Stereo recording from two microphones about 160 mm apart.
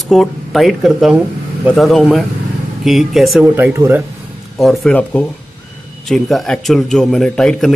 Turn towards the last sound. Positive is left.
turn(degrees=5)  # may be behind; listen again after turning